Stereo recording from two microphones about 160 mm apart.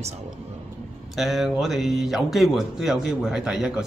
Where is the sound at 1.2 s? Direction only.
Centre (ahead or behind).